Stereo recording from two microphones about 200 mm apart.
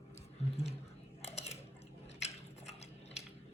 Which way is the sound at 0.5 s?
30° left (ahead or behind).